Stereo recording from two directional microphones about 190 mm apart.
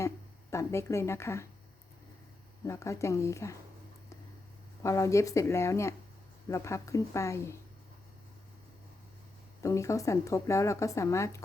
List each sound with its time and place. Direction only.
0.5 s speech: 15° left (ahead or behind)
2.6 s speech: 15° left (ahead or behind)
4.8 s speech: 15° left (ahead or behind)
9.6 s speech: 15° left (ahead or behind)